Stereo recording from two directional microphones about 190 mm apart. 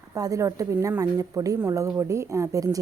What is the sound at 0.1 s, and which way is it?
Speech, 20° right (ahead or behind).